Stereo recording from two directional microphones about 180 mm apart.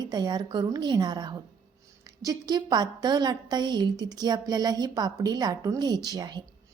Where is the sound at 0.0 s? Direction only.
25° right (ahead or behind).